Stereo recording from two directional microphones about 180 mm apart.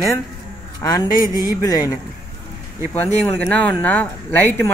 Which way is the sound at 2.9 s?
10° left (ahead or behind).